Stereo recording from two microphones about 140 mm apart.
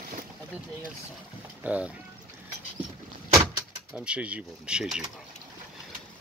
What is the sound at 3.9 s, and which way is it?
Speech, 10° right (ahead or behind).